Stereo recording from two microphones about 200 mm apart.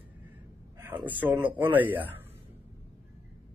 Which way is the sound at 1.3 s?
20° right (ahead or behind).